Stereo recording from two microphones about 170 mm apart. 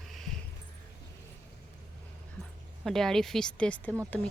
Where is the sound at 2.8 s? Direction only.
Centre (ahead or behind).